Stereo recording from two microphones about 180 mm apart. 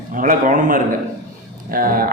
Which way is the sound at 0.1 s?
50° right (ahead or behind).